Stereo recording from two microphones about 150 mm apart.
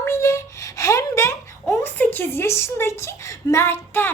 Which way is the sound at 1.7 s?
15° left (ahead or behind).